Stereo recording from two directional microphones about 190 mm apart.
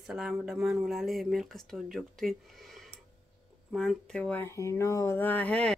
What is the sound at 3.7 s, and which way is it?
Speech, 5° left (ahead or behind).